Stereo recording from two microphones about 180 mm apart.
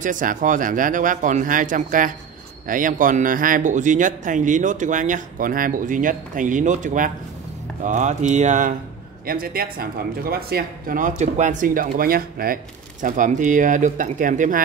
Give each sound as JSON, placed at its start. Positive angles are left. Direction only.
{"t": 0.0, "sound": "speech", "side_deg": -45}
{"t": 9.2, "sound": "speech", "side_deg": -55}